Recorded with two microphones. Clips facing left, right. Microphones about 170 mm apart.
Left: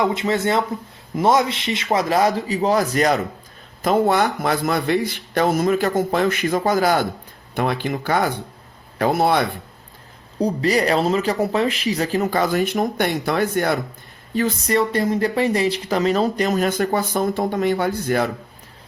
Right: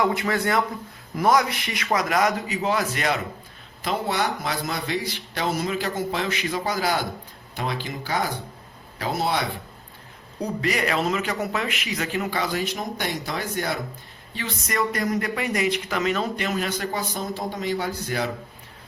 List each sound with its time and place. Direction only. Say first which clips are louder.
0.0 s a man's voice: left 3 dB; 20° left (ahead or behind); by 9.5 s 55° left (ahead or behind)
10.4 s speech: left 6 dB; 35° left (ahead or behind); by 13.7 s 60° left (ahead or behind)
14.3 s speech: left 8 dB; 35° left (ahead or behind); by 18.3 s 55° left (ahead or behind)